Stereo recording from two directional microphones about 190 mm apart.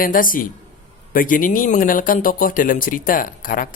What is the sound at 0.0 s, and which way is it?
Speech, 45° left (ahead or behind).